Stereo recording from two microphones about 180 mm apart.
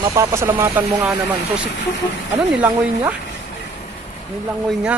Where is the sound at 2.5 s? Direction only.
10° right (ahead or behind).